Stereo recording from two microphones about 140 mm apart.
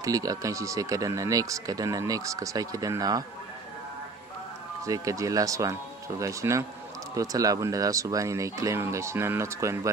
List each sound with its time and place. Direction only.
0.0 s speech: 25° right (ahead or behind)
4.8 s speech: 25° right (ahead or behind)